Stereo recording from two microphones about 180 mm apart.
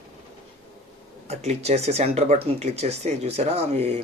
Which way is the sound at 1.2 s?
40° right (ahead or behind).